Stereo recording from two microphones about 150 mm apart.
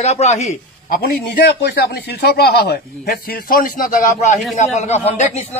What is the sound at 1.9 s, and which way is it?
Speech, 90° left.